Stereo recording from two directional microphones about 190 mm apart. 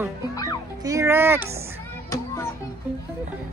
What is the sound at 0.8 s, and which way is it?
Speech, 15° right (ahead or behind).